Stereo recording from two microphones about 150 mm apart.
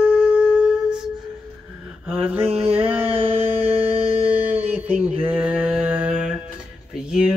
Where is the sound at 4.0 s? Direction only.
45° right (ahead or behind).